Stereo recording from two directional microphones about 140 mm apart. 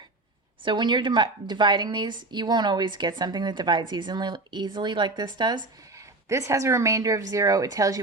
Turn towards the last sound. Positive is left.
turn(degrees=-25)  # may be behind; listen again after turning